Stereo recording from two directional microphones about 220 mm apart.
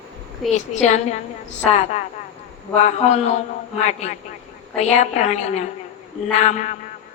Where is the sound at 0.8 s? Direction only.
30° left (ahead or behind).